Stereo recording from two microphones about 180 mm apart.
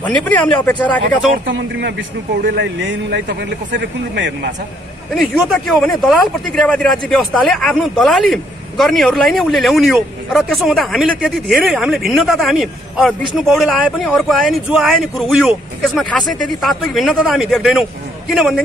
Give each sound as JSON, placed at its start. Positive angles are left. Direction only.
{"t": 0.0, "sound": "speech", "side_deg": 10}
{"t": 1.5, "sound": "a man's voice", "side_deg": -80}
{"t": 5.1, "sound": "speech", "side_deg": 0}